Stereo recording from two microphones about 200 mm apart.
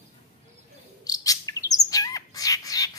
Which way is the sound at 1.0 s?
20° left (ahead or behind).